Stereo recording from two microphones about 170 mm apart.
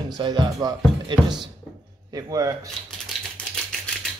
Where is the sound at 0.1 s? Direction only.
25° right (ahead or behind).